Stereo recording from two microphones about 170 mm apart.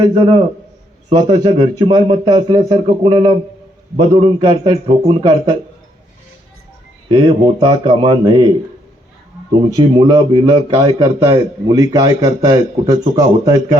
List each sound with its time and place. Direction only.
0.0 s a man's voice: 25° right (ahead or behind)
4.4 s a man's voice: 25° right (ahead or behind)
7.1 s a man's voice: 25° right (ahead or behind)
9.5 s a man's voice: 20° right (ahead or behind)